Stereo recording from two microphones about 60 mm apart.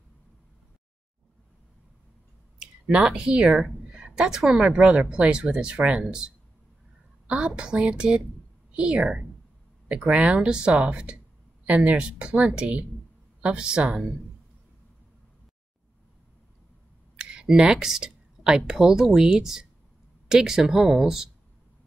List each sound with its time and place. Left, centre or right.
2.6 s a woman's voice: centre
17.2 s a sound: centre
17.5 s a woman's voice: centre